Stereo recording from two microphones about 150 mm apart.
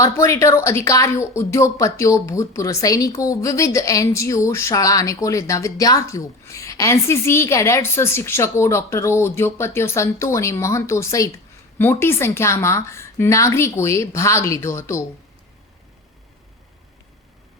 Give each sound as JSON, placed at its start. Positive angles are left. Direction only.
{"t": 0.0, "sound": "speech", "side_deg": 20}